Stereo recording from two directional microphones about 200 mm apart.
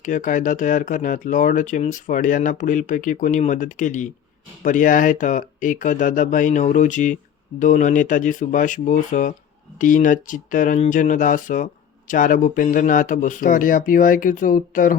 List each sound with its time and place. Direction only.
0.0 s speech: 40° left (ahead or behind)